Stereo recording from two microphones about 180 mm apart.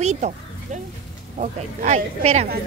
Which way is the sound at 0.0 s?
40° right (ahead or behind).